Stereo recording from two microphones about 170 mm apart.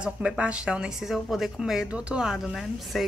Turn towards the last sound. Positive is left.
turn(degrees=0)  # may be behind; listen again after turning